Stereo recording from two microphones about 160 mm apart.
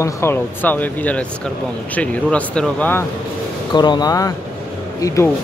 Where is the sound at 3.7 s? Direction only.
25° left (ahead or behind).